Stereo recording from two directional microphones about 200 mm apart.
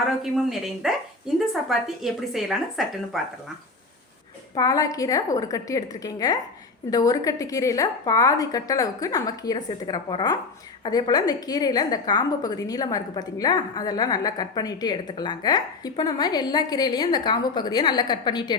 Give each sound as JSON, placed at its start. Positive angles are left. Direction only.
{"t": 0.2, "sound": "speech", "side_deg": 0}
{"t": 4.5, "sound": "a woman's voice", "side_deg": 20}